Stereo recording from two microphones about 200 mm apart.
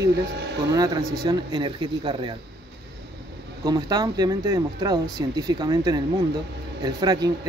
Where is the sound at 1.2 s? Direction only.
25° right (ahead or behind).